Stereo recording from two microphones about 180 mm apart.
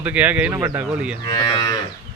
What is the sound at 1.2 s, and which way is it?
Moo, 20° left (ahead or behind).